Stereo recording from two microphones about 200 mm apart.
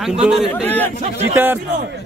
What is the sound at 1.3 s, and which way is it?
Speech, 10° right (ahead or behind).